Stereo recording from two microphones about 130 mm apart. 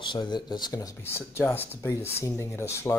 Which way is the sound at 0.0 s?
35° left (ahead or behind).